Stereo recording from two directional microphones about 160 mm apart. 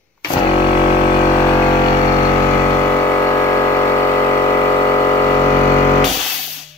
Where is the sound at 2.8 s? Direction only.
15° left (ahead or behind).